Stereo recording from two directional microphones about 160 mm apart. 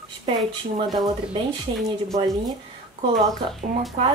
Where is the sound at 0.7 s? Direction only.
30° right (ahead or behind).